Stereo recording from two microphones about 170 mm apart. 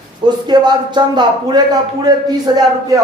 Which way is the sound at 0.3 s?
25° right (ahead or behind).